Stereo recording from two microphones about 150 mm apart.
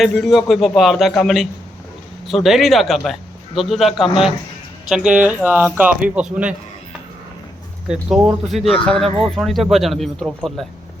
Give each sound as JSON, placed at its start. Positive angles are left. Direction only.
{"t": 0.0, "sound": "a man's voice", "side_deg": 0}
{"t": 7.9, "sound": "a man's voice", "side_deg": -5}